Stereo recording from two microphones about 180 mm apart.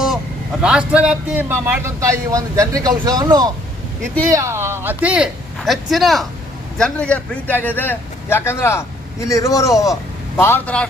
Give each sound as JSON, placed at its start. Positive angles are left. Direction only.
{"t": 0.6, "sound": "speech", "side_deg": -5}